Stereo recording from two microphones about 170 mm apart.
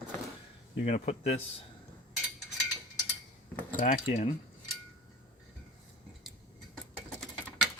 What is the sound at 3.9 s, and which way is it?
Speech, 45° left (ahead or behind).